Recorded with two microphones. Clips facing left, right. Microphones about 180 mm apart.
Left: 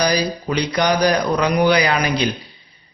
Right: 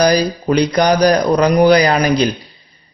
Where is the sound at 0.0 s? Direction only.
45° right (ahead or behind).